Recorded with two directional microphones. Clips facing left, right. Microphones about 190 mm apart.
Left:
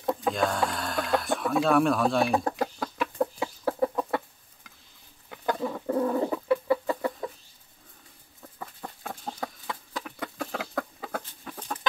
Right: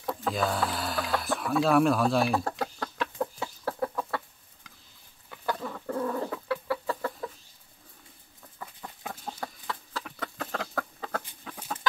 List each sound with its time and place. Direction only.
0.3 s music: centre (ahead or behind)
1.2 s a sound: centre (ahead or behind)
1.6 s speech: centre (ahead or behind)
2.5 s chicken: 10° left (ahead or behind)
5.3 s chicken: 20° left (ahead or behind)
9.4 s chicken: 20° left (ahead or behind)
10.0 s chicken: 5° left (ahead or behind)
11.2 s chicken: 5° right (ahead or behind)